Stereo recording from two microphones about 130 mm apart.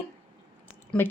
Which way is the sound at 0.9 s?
10° left (ahead or behind).